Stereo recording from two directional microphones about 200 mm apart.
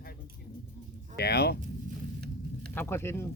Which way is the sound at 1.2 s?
55° left (ahead or behind).